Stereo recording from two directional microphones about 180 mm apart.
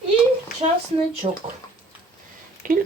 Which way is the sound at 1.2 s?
30° right (ahead or behind).